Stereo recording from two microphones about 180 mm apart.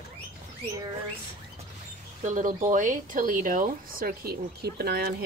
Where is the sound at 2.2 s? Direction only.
45° right (ahead or behind).